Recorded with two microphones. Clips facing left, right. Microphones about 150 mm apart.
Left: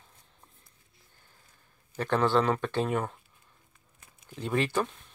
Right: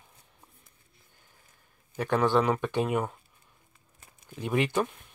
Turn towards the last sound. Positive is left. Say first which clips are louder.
# right 1 dB
turn(degrees=-15)  # may be behind; listen again after turning